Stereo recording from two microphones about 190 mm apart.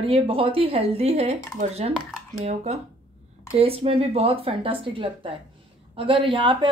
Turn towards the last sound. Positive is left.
turn(degrees=-25)  # may be behind; listen again after turning